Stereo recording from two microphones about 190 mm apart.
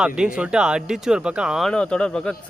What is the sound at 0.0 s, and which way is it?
Speech, 5° right (ahead or behind).